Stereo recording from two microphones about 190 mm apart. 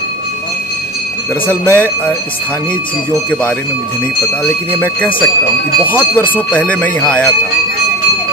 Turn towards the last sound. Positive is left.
turn(degrees=5)  # may be behind; listen again after turning